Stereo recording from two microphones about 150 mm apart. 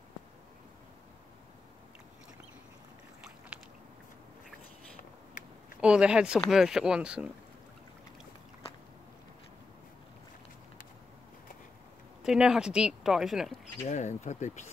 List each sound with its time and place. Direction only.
5.8 s speech: 5° right (ahead or behind)
12.2 s speech: 5° right (ahead or behind)
13.8 s speech: 50° left (ahead or behind)